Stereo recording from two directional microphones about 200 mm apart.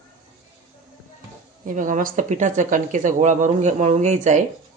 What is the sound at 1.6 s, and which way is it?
Speech, 40° right (ahead or behind).